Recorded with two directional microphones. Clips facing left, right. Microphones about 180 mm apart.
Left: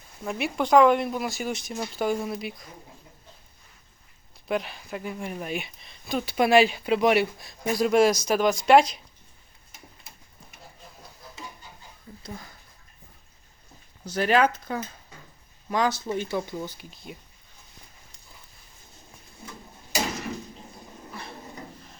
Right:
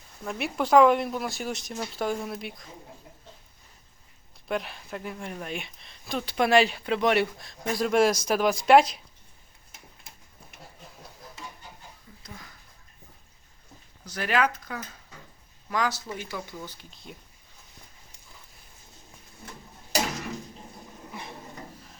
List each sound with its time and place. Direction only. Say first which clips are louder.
0.3 s speech: left 2 dB; centre (ahead or behind)
4.4 s speech: left 2 dB; centre (ahead or behind)
12.2 s speech: left 6 dB; 30° left (ahead or behind)
14.0 s speech: left 5 dB; 30° left (ahead or behind)
16.6 s speech: left 4 dB; 10° left (ahead or behind)
21.1 s a sound: even; 20° right (ahead or behind)